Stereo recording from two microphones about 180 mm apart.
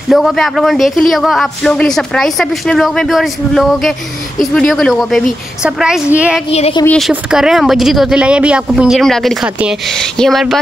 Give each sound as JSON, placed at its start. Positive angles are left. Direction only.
{"t": 0.1, "sound": "a woman's voice", "side_deg": 0}
{"t": 6.5, "sound": "speech", "side_deg": 35}
{"t": 7.0, "sound": "speech", "side_deg": -5}